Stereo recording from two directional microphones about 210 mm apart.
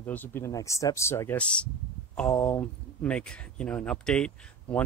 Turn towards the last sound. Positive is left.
turn(degrees=5)  # may be behind; listen again after turning